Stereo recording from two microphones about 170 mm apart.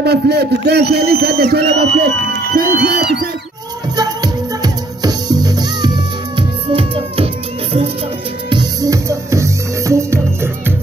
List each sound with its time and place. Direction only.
0.0 s a man's voice: 70° right (ahead or behind)
2.3 s music: 65° right (ahead or behind)
3.9 s music: 25° right (ahead or behind)
8.5 s music: 25° right (ahead or behind)